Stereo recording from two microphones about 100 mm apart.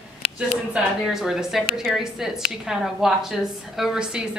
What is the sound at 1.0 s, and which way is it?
A woman's voice, 5° right (ahead or behind).